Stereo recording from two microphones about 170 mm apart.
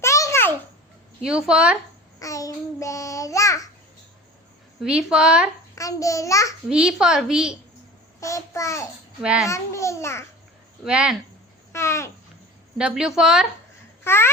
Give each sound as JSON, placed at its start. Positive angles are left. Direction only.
{"t": 0.0, "sound": "babbling", "side_deg": 15}
{"t": 1.2, "sound": "a woman's voice", "side_deg": -5}
{"t": 2.1, "sound": "babbling", "side_deg": 20}
{"t": 4.8, "sound": "a woman's voice", "side_deg": -5}
{"t": 5.7, "sound": "a child's voice", "side_deg": 20}
{"t": 6.7, "sound": "a woman's voice", "side_deg": -5}
{"t": 8.2, "sound": "a child's voice", "side_deg": 20}
{"t": 9.2, "sound": "a woman's voice", "side_deg": -5}
{"t": 9.5, "sound": "a child's voice", "side_deg": 15}
{"t": 10.8, "sound": "a woman's voice", "side_deg": -5}
{"t": 11.7, "sound": "a child's voice", "side_deg": 15}
{"t": 12.7, "sound": "a woman's voice", "side_deg": -5}
{"t": 14.0, "sound": "a child's voice", "side_deg": 15}